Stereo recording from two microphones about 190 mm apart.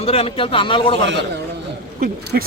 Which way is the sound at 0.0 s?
30° left (ahead or behind).